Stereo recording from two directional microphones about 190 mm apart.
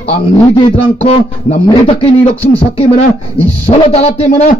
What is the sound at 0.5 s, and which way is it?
A man's voice, 30° left (ahead or behind).